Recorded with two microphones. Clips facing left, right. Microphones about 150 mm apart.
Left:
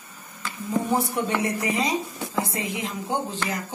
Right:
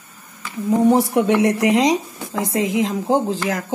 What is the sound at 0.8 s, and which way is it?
Speech, 80° right.